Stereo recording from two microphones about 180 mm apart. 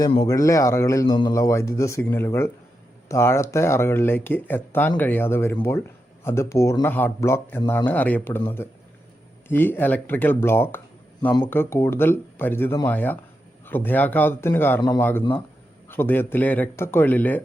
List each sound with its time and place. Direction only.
0.3 s speech: 15° left (ahead or behind)
9.5 s speech: 10° left (ahead or behind)